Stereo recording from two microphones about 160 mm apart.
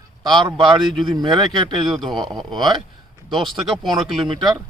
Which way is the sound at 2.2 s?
Centre (ahead or behind).